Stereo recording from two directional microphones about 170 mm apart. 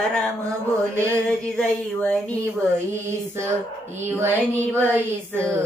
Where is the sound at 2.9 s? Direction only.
15° right (ahead or behind).